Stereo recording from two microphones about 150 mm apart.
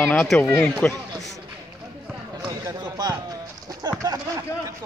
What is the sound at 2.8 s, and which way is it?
Speech, 25° right (ahead or behind).